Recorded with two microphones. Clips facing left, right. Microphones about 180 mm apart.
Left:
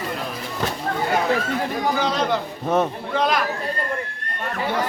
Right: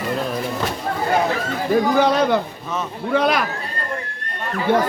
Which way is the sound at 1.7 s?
60° right (ahead or behind).